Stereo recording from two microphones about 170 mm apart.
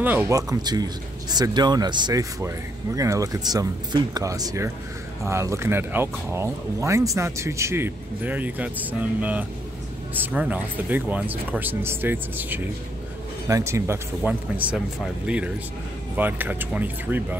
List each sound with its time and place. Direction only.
0.0 s speech: 10° right (ahead or behind)